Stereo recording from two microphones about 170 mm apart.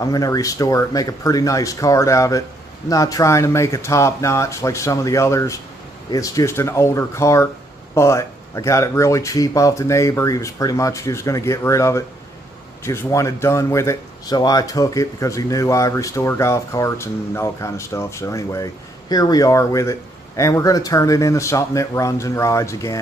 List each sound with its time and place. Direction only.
0.0 s speech: 20° left (ahead or behind)